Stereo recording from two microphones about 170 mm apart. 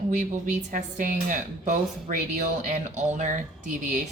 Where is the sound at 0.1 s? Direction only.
45° right (ahead or behind).